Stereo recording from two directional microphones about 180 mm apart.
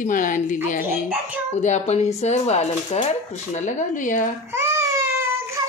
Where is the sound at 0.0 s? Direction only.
45° left (ahead or behind).